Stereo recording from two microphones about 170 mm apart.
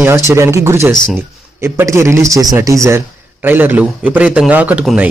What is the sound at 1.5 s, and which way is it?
Speech, 15° right (ahead or behind).